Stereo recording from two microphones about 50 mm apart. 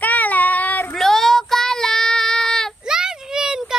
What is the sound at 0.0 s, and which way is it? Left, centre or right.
Child singing, left.